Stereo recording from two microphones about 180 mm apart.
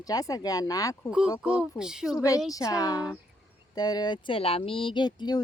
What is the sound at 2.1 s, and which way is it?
Speech, 20° left (ahead or behind).